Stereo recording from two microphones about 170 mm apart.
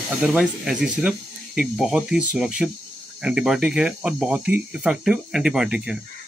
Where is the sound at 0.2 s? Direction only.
5° right (ahead or behind).